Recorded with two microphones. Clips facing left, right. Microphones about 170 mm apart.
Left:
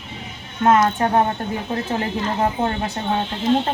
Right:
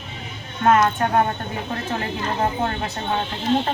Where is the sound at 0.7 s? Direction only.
25° left (ahead or behind).